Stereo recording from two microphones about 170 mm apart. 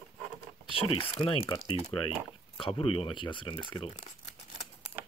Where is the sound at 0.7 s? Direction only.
35° left (ahead or behind).